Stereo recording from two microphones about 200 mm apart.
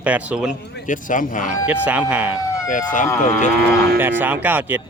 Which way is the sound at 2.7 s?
40° left (ahead or behind).